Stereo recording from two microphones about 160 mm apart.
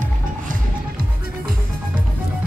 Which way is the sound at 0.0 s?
60° right (ahead or behind).